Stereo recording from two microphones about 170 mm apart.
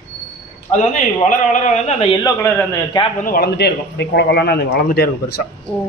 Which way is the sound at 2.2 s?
15° left (ahead or behind).